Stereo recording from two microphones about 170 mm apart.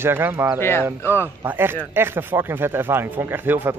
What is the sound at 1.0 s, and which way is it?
Speech, 15° left (ahead or behind).